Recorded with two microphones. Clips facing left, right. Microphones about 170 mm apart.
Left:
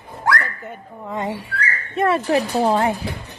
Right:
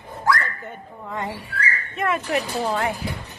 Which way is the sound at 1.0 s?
20° left (ahead or behind).